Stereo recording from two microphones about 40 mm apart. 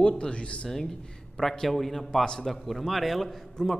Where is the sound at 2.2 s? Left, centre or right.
Centre.